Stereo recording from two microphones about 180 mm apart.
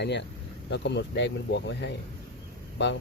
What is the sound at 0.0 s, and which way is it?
Speech, 70° left (ahead or behind).